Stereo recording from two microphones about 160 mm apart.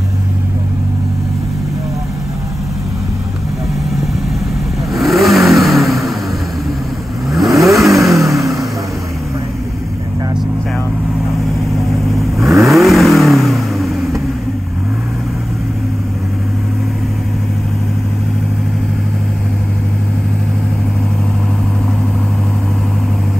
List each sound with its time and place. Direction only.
4.9 s vehicle: centre (ahead or behind)
7.2 s vehicle: centre (ahead or behind)
12.1 s vehicle: centre (ahead or behind)
12.4 s vehicle: 20° right (ahead or behind)
12.7 s vehicle: centre (ahead or behind)